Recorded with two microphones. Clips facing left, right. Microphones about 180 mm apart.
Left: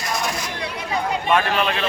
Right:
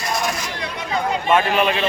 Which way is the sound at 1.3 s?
10° right (ahead or behind).